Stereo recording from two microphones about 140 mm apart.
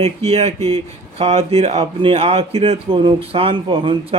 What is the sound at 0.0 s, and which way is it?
A man's voice, 45° right (ahead or behind).